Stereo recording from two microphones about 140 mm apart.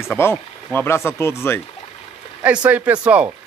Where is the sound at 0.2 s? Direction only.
15° left (ahead or behind).